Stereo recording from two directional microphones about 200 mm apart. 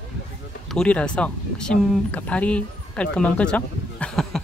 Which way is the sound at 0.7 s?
5° left (ahead or behind).